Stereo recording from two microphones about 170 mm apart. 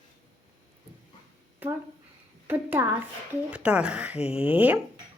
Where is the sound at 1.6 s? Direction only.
10° right (ahead or behind).